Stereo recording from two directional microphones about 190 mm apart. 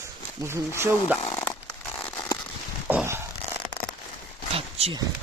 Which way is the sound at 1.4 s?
10° left (ahead or behind).